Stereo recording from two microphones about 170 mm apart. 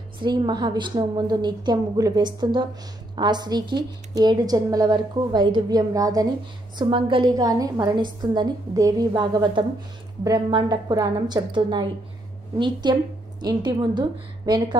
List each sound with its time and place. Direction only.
0.2 s a woman's voice: 25° right (ahead or behind)